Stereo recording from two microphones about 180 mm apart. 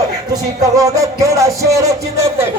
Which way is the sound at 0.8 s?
15° right (ahead or behind).